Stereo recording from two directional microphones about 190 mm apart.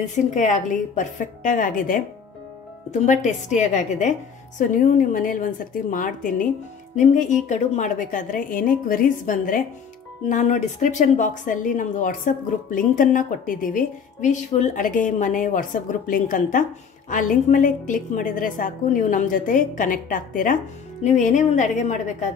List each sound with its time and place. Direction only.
0.0 s a woman's voice: 40° left (ahead or behind)